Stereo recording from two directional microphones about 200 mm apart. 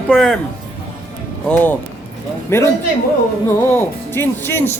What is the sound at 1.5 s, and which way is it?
Speech, 10° left (ahead or behind).